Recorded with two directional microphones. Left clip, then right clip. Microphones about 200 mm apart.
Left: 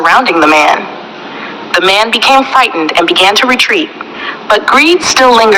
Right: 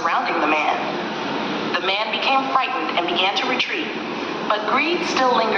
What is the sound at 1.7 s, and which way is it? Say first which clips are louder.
A woman's voice: left 16 dB; 50° left (ahead or behind).